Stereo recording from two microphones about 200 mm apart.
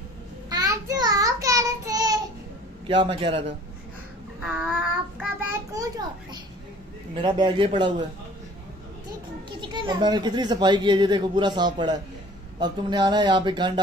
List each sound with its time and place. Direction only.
0.5 s child singing: 15° right (ahead or behind)
2.9 s speech: 25° right (ahead or behind)
4.6 s child singing: centre (ahead or behind)
5.5 s a sound: 15° right (ahead or behind)
7.2 s speech: 20° right (ahead or behind)
9.5 s speech: 25° right (ahead or behind)